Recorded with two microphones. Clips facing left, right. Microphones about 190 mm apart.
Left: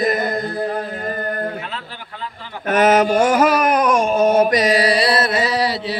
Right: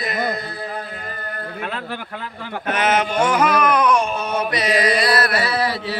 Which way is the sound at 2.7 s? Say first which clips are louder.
Left 6 dB; 40° left (ahead or behind).